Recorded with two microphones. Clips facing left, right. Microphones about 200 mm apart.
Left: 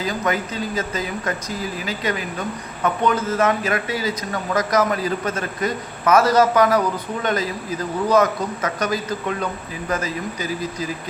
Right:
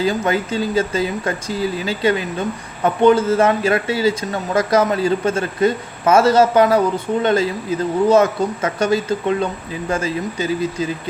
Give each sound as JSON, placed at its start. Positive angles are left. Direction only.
{"t": 0.0, "sound": "speech", "side_deg": -30}